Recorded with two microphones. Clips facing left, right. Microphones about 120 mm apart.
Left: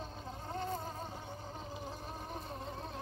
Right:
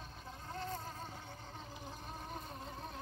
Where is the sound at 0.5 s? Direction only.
20° left (ahead or behind); by 2.7 s centre (ahead or behind).